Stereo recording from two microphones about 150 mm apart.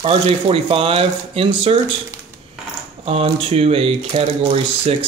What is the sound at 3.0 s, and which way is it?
Speech, 40° right (ahead or behind).